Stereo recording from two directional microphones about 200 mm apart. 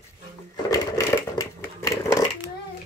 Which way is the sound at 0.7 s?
15° left (ahead or behind).